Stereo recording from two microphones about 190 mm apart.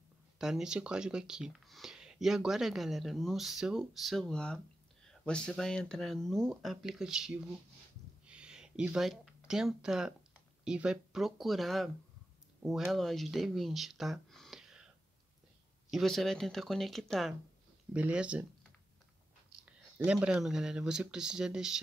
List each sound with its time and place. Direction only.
0.4 s speech: centre (ahead or behind)
8.3 s a sound: 5° right (ahead or behind)
10.6 s speech: 5° right (ahead or behind)
15.9 s speech: centre (ahead or behind)
20.1 s speech: 5° right (ahead or behind)